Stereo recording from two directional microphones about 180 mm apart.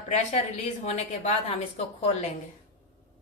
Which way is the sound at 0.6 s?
35° left (ahead or behind).